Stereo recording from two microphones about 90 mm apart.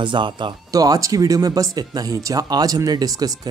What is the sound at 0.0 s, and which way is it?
Speech, 65° right (ahead or behind).